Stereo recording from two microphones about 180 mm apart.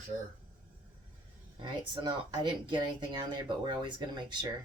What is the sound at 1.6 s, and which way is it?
Speech, 25° right (ahead or behind).